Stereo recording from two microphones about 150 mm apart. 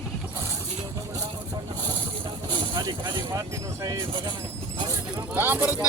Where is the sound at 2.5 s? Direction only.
30° right (ahead or behind).